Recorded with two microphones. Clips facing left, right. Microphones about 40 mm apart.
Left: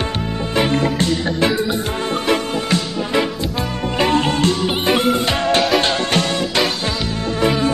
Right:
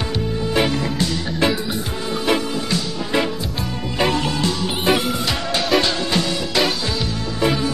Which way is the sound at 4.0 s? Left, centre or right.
Left.